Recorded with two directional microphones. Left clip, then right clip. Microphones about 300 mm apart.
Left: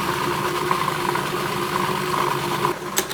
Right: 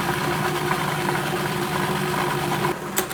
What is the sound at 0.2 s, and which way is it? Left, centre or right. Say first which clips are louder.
Vehicle: left 1 dB; centre.